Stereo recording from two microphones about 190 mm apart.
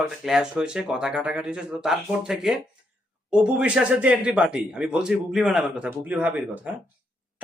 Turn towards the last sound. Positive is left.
turn(degrees=-10)  # may be behind; listen again after turning